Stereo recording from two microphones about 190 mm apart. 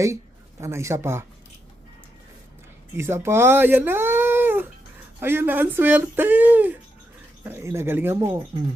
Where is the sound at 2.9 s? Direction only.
15° right (ahead or behind).